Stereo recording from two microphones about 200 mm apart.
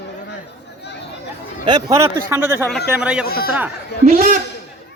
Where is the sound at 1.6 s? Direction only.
20° right (ahead or behind).